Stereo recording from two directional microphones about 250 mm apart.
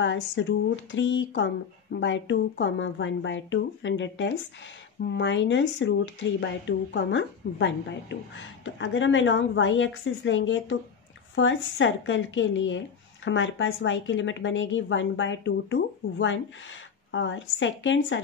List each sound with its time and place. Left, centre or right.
0.0 s speech: left